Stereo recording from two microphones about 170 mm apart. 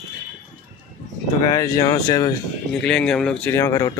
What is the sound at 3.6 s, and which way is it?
Speech, 20° left (ahead or behind).